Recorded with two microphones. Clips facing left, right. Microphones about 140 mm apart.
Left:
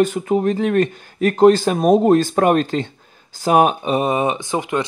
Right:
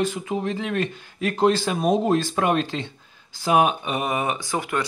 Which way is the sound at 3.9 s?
25° left (ahead or behind).